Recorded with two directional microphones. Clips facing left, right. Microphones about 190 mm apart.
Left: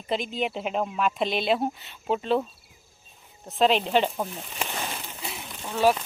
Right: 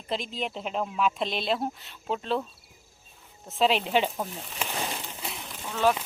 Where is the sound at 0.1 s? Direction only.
Centre (ahead or behind).